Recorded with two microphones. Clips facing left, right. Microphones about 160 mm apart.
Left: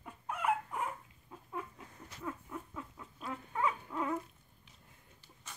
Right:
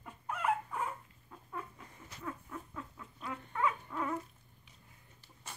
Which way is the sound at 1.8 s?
Centre (ahead or behind).